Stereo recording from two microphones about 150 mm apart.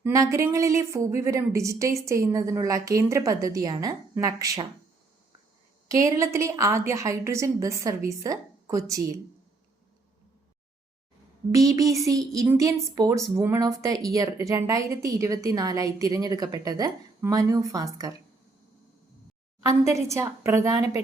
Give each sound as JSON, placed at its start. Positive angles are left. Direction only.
{"t": 0.0, "sound": "speech", "side_deg": -20}
{"t": 5.9, "sound": "speech", "side_deg": -20}
{"t": 11.5, "sound": "speech", "side_deg": -20}
{"t": 19.6, "sound": "speech", "side_deg": -20}